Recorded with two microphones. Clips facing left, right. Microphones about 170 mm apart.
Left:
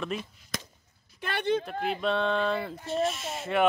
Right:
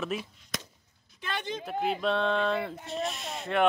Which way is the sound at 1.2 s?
60° left (ahead or behind).